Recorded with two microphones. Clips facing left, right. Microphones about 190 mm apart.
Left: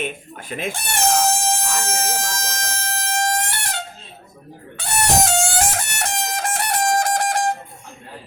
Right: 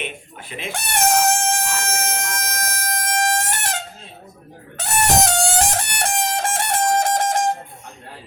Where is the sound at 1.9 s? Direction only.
55° right (ahead or behind).